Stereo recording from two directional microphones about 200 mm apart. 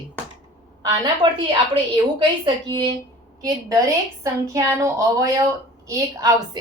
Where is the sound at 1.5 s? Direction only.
25° right (ahead or behind).